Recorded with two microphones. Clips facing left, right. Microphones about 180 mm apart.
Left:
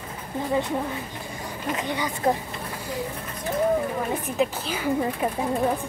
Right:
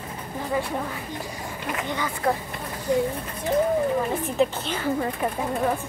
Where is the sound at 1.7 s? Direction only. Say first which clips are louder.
Even; 15° left (ahead or behind).